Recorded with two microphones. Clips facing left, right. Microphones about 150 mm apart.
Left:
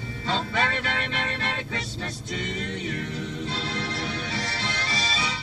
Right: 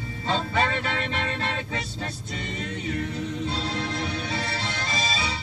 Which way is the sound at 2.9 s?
40° right (ahead or behind).